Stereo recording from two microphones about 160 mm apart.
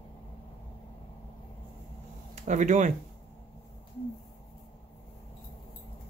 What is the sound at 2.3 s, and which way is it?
Speech, 50° right (ahead or behind).